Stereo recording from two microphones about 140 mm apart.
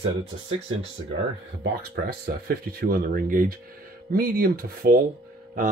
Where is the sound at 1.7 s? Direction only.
90° right.